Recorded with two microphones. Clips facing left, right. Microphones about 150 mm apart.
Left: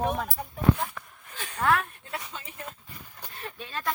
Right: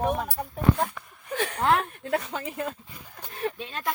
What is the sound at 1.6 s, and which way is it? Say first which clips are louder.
Speech: right 1 dB; 25° right (ahead or behind).